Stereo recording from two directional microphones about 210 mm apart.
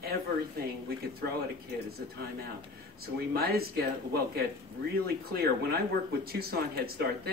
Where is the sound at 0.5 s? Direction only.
50° right (ahead or behind).